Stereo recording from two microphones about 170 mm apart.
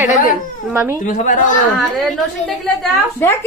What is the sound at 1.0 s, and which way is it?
Speech, 50° left (ahead or behind).